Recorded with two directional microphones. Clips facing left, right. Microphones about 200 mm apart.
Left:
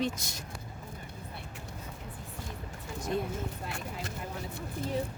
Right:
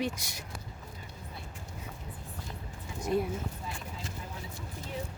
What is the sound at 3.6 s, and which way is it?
Vehicle, 70° left (ahead or behind).